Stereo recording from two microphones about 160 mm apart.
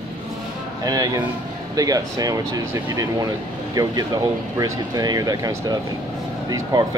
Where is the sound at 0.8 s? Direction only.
20° right (ahead or behind).